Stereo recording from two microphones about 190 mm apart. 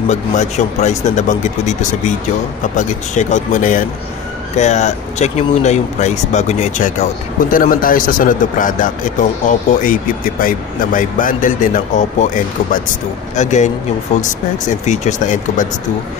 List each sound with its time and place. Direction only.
0.1 s speech: 35° left (ahead or behind)
13.4 s speech: 40° left (ahead or behind)
14.9 s speech: 40° left (ahead or behind)